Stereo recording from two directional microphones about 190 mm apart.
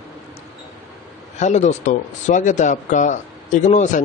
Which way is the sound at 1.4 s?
35° left (ahead or behind).